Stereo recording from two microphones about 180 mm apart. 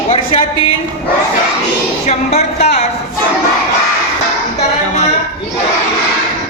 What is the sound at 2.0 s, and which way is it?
Speech, 40° left (ahead or behind).